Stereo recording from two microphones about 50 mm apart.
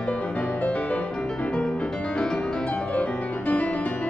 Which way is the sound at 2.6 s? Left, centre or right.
Left.